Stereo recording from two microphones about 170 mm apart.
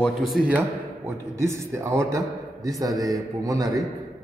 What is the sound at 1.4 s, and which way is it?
A man's voice, 15° right (ahead or behind).